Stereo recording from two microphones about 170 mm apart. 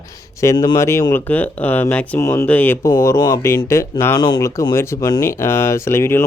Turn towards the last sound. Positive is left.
turn(degrees=15)  # may be behind; listen again after turning